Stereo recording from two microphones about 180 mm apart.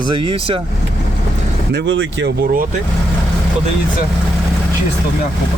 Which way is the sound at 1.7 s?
80° right.